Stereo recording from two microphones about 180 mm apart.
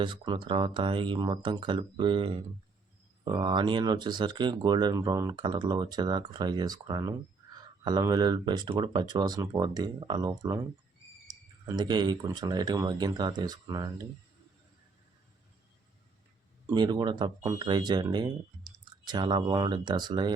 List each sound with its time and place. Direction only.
0.0 s speech: 25° right (ahead or behind)
11.6 s speech: 25° right (ahead or behind)
16.6 s speech: 25° right (ahead or behind)